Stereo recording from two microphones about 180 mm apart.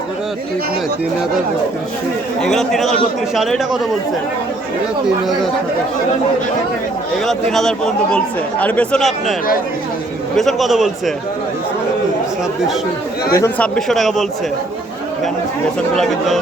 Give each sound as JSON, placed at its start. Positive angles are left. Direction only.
{"t": 2.4, "sound": "speech", "side_deg": 0}
{"t": 7.3, "sound": "speech", "side_deg": 0}
{"t": 10.3, "sound": "speech", "side_deg": 0}
{"t": 13.3, "sound": "a man's voice", "side_deg": 15}
{"t": 13.7, "sound": "speech", "side_deg": 0}
{"t": 16.0, "sound": "speech", "side_deg": 0}